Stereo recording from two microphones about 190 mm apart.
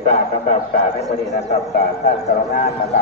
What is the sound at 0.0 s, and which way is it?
Speech, 40° left (ahead or behind).